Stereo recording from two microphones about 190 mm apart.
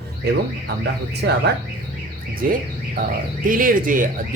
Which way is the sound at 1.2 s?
60° right (ahead or behind).